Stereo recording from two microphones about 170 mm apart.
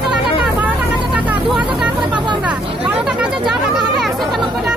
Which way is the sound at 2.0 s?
25° right (ahead or behind).